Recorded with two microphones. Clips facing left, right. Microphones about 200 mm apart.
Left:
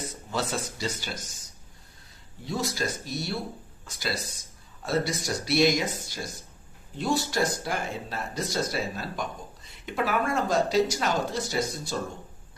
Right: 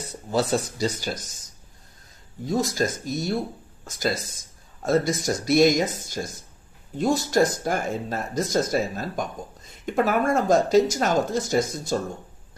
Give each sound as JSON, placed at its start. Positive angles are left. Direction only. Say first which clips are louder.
{"t": 0.3, "sound": "speech", "louder": "right 8 dB", "side_deg": -40}
{"t": 2.4, "sound": "speech", "louder": "right 6 dB", "side_deg": -45}